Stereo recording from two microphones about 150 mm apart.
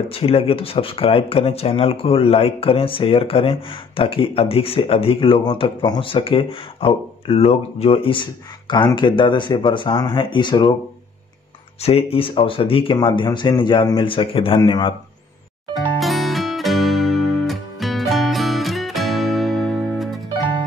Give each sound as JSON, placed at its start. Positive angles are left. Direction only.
{"t": 0.1, "sound": "speech", "side_deg": 40}
{"t": 11.8, "sound": "speech", "side_deg": 40}
{"t": 15.7, "sound": "music", "side_deg": 0}